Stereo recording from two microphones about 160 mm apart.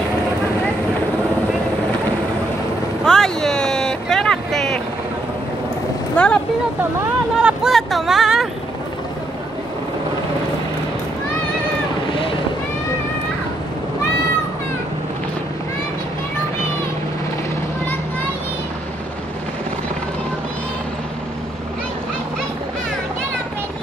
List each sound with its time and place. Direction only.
3.1 s vehicle: 5° left (ahead or behind)
6.1 s vehicle: 5° left (ahead or behind)
7.4 s a sound: centre (ahead or behind)
12.1 s boat: 35° left (ahead or behind)